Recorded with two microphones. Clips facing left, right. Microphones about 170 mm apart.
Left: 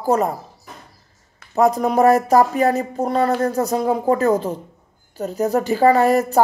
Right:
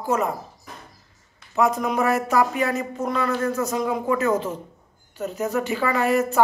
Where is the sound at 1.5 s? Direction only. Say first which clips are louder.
Left 5 dB; 35° left (ahead or behind).